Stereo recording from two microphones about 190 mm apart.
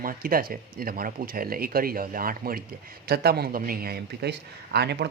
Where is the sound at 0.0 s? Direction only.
50° right (ahead or behind).